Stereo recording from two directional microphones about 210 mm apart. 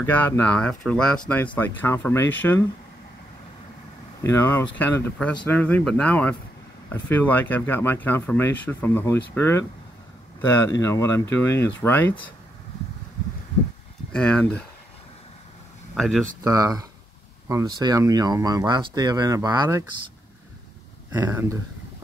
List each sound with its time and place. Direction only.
0.0 s speech: 10° left (ahead or behind)
4.2 s speech: 10° left (ahead or behind)
14.1 s speech: 5° left (ahead or behind)
15.9 s speech: centre (ahead or behind)
16.4 s speech: 15° right (ahead or behind)
21.1 s speech: 15° right (ahead or behind)